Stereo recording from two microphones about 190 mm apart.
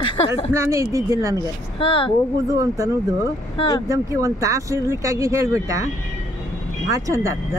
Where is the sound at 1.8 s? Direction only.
30° left (ahead or behind).